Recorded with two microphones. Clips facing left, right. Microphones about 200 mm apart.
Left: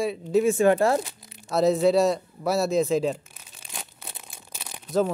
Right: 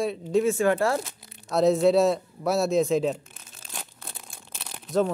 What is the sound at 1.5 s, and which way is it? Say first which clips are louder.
Speech: even; centre (ahead or behind).